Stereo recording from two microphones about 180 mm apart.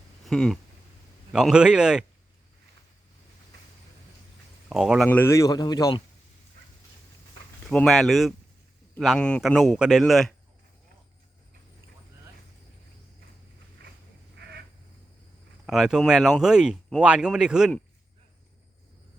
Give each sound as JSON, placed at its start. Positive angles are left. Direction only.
{"t": 0.3, "sound": "a man's voice", "side_deg": 0}
{"t": 4.7, "sound": "a man's voice", "side_deg": 0}
{"t": 5.0, "sound": "speech", "side_deg": 10}
{"t": 7.7, "sound": "a man's voice", "side_deg": 5}
{"t": 14.4, "sound": "crow", "side_deg": -70}
{"t": 15.6, "sound": "a man's voice", "side_deg": 0}